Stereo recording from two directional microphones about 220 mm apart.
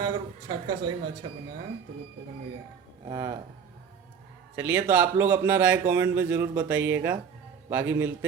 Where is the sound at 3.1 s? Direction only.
15° right (ahead or behind).